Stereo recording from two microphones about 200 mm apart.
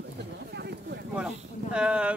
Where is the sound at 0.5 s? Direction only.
55° right (ahead or behind).